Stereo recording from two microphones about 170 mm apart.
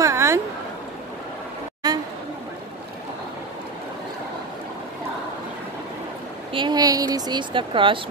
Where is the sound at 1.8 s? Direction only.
25° right (ahead or behind).